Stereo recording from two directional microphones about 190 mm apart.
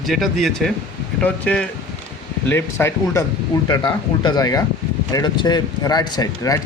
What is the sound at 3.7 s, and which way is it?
Speech, 25° left (ahead or behind).